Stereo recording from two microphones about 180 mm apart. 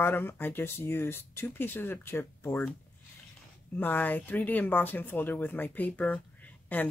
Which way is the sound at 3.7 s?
10° left (ahead or behind).